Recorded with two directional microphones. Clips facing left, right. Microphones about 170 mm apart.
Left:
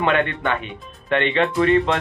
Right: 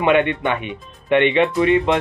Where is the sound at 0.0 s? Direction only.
15° right (ahead or behind).